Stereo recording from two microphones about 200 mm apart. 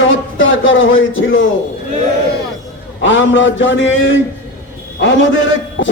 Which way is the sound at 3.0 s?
70° left (ahead or behind).